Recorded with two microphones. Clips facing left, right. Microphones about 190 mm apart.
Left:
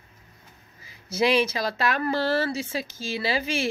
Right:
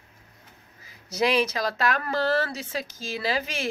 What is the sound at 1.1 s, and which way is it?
A woman's voice, 5° left (ahead or behind).